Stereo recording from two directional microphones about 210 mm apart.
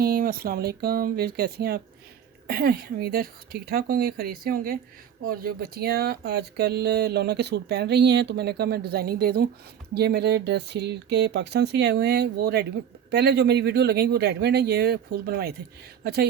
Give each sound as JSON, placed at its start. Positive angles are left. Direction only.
{"t": 0.0, "sound": "speech", "side_deg": -45}